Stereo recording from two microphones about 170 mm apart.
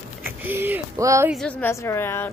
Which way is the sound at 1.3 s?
5° left (ahead or behind).